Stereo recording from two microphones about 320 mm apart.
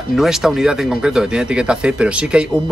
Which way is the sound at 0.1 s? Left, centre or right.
Centre.